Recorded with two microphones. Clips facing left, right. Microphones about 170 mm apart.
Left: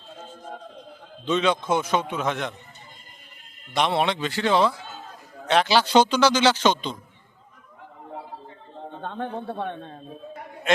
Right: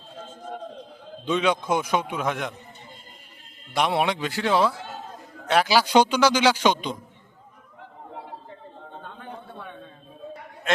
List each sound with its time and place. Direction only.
1.2 s a man's voice: 10° right (ahead or behind)
3.7 s a man's voice: 10° right (ahead or behind)
9.0 s a sound: 70° left (ahead or behind)
9.6 s speech: 70° left (ahead or behind)